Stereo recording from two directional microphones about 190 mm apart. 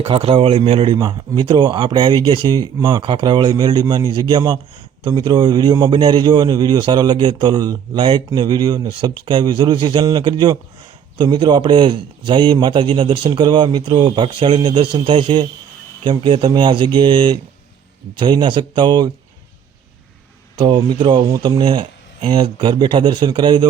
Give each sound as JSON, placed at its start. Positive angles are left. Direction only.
{"t": 0.0, "sound": "a man's voice", "side_deg": -30}
{"t": 20.6, "sound": "a man's voice", "side_deg": -25}